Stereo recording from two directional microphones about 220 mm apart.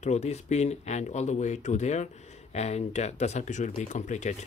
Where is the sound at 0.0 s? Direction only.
30° left (ahead or behind).